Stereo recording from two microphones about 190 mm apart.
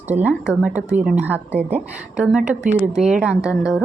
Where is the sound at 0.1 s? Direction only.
10° right (ahead or behind).